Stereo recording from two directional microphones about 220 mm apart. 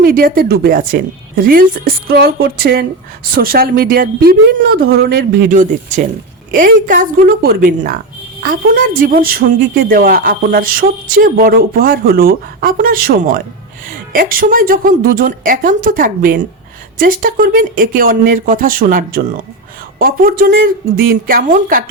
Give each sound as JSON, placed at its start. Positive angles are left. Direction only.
{"t": 0.0, "sound": "a woman's voice", "side_deg": -40}